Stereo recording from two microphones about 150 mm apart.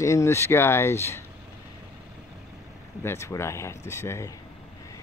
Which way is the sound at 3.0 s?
15° left (ahead or behind).